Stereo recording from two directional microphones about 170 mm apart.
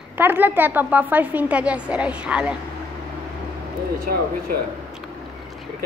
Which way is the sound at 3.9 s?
60° right (ahead or behind).